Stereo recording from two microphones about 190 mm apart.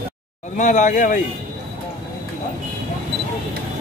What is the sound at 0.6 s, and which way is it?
Speech, 40° left (ahead or behind).